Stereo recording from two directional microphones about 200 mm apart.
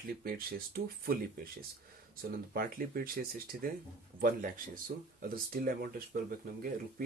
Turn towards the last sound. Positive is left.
turn(degrees=-45)  # may be behind; listen again after turning